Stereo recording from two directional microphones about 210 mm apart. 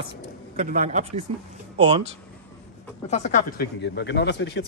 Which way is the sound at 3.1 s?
35° left (ahead or behind).